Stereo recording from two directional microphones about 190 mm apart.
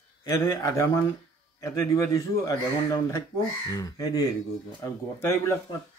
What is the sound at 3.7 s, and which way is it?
A man's voice, 20° left (ahead or behind).